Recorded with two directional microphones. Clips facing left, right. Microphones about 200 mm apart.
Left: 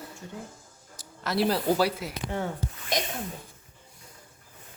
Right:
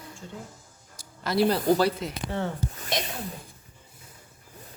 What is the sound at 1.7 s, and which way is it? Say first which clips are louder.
Speech: right 2 dB; 5° left (ahead or behind).